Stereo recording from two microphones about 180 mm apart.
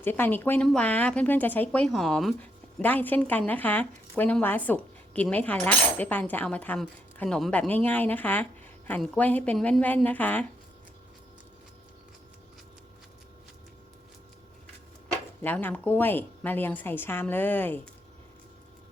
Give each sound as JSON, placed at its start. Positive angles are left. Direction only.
{"t": 0.0, "sound": "speech", "side_deg": 10}
{"t": 15.4, "sound": "speech", "side_deg": 10}